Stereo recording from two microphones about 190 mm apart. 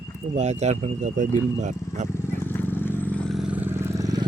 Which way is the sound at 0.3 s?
35° right (ahead or behind).